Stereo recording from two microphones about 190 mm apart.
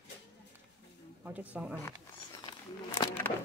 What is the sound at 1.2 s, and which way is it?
Speech, 10° right (ahead or behind).